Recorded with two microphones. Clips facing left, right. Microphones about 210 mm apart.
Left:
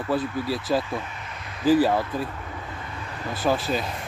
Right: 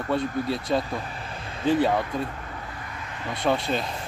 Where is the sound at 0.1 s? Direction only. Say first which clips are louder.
Right 1 dB; 5° left (ahead or behind).